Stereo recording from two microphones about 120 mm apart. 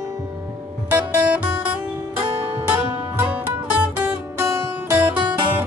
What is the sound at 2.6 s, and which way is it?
Music, 15° right (ahead or behind).